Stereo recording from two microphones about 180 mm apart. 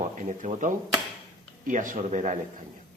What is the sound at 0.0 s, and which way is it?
Speech, 40° right (ahead or behind).